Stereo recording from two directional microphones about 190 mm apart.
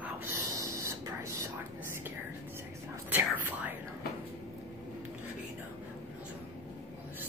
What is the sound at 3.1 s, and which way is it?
Speech, 10° right (ahead or behind).